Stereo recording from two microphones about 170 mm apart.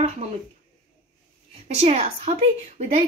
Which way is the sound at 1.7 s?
40° right (ahead or behind).